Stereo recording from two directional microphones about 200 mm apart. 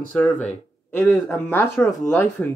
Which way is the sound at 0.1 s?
5° left (ahead or behind).